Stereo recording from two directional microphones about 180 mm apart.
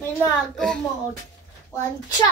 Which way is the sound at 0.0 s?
10° left (ahead or behind).